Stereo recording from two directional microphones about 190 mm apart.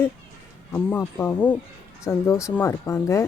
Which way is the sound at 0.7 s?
10° left (ahead or behind).